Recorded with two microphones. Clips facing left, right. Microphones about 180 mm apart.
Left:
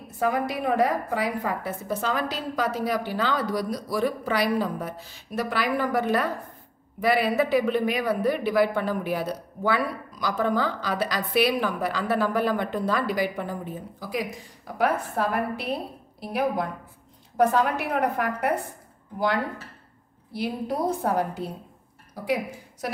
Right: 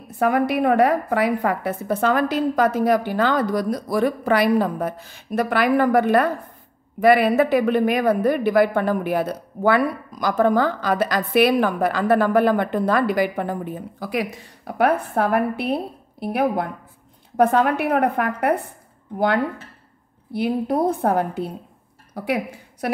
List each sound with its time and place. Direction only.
0.2 s a woman's voice: 65° right (ahead or behind)